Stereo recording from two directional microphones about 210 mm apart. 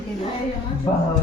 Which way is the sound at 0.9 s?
20° left (ahead or behind).